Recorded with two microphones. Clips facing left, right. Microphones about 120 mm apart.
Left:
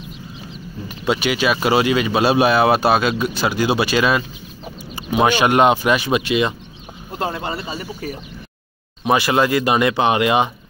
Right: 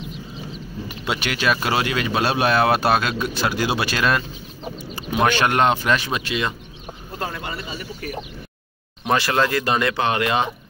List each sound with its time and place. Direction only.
0.8 s speech: centre (ahead or behind); by 7.9 s 35° left (ahead or behind)
9.0 s speech: 10° left (ahead or behind)